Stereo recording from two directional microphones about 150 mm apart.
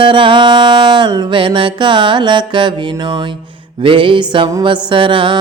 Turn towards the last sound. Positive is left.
turn(degrees=-35)  # may be behind; listen again after turning